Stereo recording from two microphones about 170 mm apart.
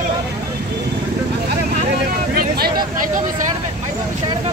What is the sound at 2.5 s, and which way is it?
Speech, 65° right (ahead or behind).